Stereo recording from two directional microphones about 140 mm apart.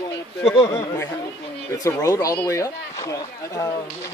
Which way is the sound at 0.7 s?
25° left (ahead or behind).